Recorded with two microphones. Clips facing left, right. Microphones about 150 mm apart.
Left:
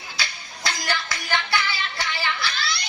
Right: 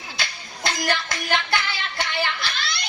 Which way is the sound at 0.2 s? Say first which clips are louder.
Right 2 dB; 50° right (ahead or behind).